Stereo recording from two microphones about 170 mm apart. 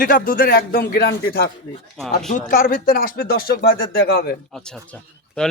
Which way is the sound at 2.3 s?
55° left (ahead or behind).